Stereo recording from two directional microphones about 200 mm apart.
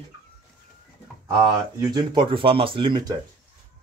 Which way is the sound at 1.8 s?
20° right (ahead or behind).